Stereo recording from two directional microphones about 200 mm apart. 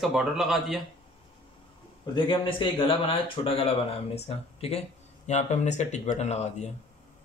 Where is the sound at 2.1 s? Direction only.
25° left (ahead or behind).